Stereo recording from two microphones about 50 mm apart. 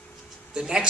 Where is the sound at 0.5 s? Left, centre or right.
Centre.